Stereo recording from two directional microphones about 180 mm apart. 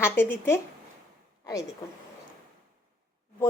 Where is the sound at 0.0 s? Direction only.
15° left (ahead or behind).